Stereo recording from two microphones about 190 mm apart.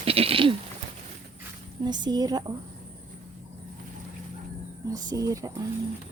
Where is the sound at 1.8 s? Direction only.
20° right (ahead or behind).